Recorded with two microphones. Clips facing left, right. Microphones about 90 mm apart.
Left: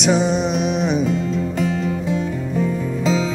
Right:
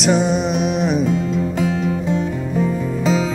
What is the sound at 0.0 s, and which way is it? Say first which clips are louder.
Music: right 1 dB; centre (ahead or behind).